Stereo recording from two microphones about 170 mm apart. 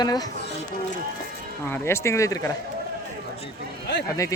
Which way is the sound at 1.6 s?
15° left (ahead or behind).